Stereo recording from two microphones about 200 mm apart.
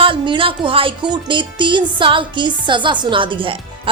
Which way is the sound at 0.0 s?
25° right (ahead or behind).